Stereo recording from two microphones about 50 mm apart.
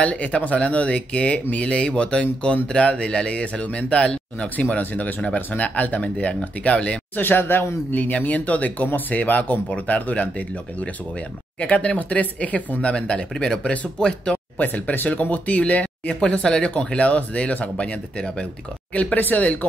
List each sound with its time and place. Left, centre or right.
0.0 s speech: left
4.6 s speech: left
7.2 s speech: left
7.9 s speech: left
11.6 s speech: left
14.6 s speech: left; by 18.5 s centre
19.1 s speech: left